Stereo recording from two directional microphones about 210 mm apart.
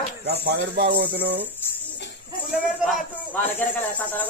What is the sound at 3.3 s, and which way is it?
Speech, 10° left (ahead or behind).